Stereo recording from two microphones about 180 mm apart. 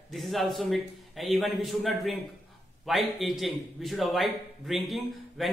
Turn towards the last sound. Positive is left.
turn(degrees=0)  # may be behind; listen again after turning